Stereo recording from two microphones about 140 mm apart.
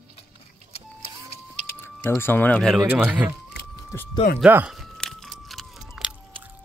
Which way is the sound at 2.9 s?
10° right (ahead or behind).